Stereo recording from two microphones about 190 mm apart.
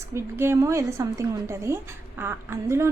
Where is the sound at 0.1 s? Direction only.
15° right (ahead or behind).